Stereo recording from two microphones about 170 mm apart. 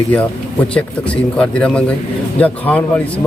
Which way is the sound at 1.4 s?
5° left (ahead or behind).